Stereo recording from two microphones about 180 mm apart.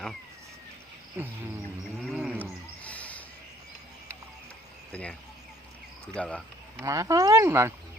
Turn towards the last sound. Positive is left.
turn(degrees=-15)  # may be behind; listen again after turning